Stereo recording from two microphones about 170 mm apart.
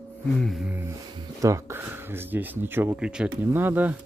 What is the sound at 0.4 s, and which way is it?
Speech, centre (ahead or behind).